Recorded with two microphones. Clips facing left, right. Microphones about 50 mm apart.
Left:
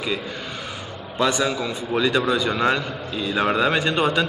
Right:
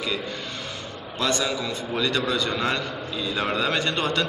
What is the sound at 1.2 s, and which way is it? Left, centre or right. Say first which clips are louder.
A man's voice: left 4 dB; centre.